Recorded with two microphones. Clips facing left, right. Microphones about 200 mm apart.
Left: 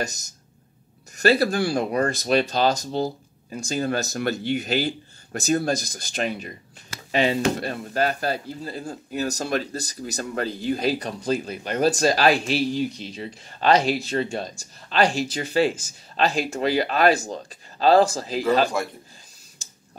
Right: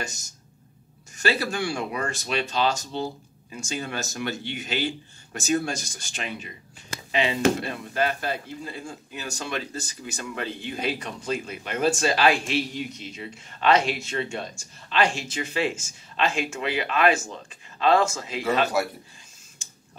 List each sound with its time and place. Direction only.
1.1 s speech: 40° left (ahead or behind)